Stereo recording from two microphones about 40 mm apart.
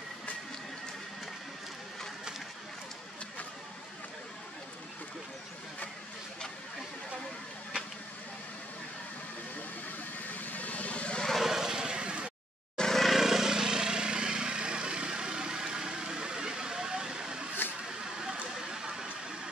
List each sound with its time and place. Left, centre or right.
10.2 s vehicle: left
11.3 s vehicle: centre
12.7 s vehicle: centre
13.0 s vehicle: centre
18.2 s a sound: centre